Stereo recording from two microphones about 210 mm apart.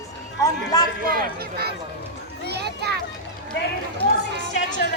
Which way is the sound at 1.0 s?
45° right (ahead or behind).